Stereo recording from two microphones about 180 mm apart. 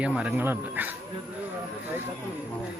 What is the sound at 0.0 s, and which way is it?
Speech, 5° right (ahead or behind).